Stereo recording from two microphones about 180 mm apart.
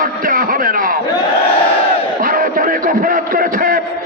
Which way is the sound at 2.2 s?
50° right (ahead or behind).